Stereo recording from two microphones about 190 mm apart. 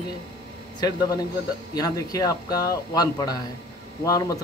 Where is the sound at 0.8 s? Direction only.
20° left (ahead or behind).